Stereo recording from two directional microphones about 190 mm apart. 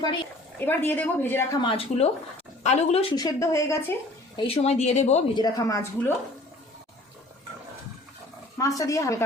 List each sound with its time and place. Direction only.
0.6 s a woman's voice: 10° left (ahead or behind)
1.6 s a woman's voice: 30° left (ahead or behind)
4.4 s speech: 30° left (ahead or behind)
5.3 s a woman's voice: 20° left (ahead or behind)
8.5 s a woman's voice: 15° left (ahead or behind)